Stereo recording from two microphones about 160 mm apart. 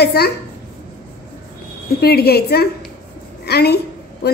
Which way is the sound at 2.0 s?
80° left.